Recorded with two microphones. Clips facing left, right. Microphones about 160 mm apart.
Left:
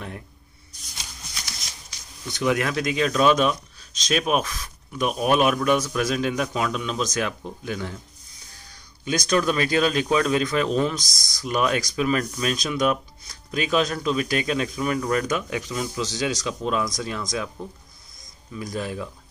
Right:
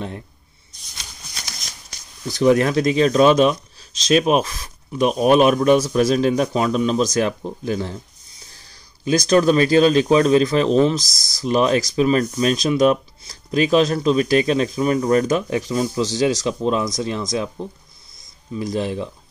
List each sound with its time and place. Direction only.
1.9 s speech: 35° right (ahead or behind)
9.0 s speech: 35° right (ahead or behind)